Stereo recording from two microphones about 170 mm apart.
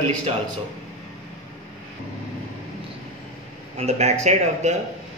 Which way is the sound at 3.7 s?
40° right (ahead or behind).